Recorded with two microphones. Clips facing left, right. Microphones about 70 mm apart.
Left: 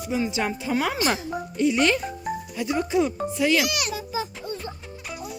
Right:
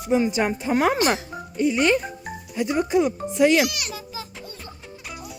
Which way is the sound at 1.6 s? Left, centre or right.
Centre.